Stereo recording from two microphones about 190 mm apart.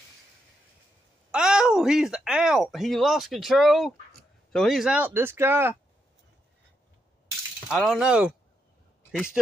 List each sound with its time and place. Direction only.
1.3 s speech: 5° right (ahead or behind)
7.6 s speech: centre (ahead or behind)